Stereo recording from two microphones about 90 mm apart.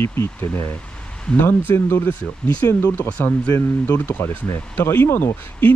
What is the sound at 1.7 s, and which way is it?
Speech, 25° left (ahead or behind).